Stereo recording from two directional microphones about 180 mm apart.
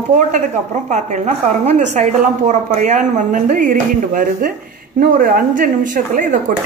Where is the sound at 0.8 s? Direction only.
40° right (ahead or behind).